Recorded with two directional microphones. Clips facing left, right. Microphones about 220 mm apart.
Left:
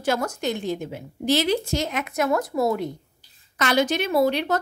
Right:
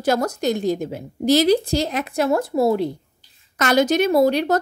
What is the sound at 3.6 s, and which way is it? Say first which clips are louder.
Speech: right 5 dB; 45° right (ahead or behind).